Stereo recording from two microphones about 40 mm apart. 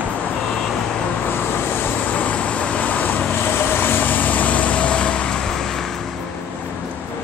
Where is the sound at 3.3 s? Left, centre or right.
Left; by 5.8 s centre.